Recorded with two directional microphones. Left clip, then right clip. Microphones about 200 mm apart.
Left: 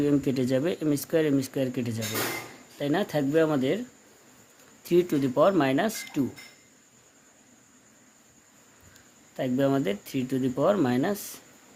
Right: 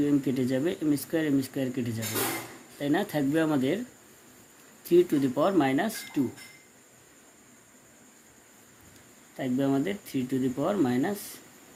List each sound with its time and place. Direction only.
0.0 s speech: 30° left (ahead or behind)
4.8 s speech: 30° left (ahead or behind)
9.4 s speech: 35° left (ahead or behind)